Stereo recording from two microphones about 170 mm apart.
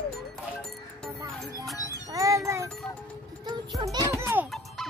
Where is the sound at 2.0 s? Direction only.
20° right (ahead or behind).